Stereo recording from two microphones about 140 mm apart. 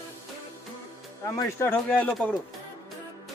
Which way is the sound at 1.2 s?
25° left (ahead or behind).